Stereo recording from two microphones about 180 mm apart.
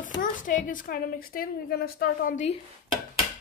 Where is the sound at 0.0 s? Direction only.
45° left (ahead or behind).